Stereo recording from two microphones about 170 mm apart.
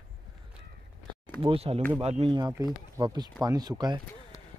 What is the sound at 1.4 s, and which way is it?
Speech, 35° right (ahead or behind).